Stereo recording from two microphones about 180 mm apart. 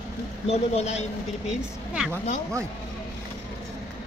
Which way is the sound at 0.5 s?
35° left (ahead or behind).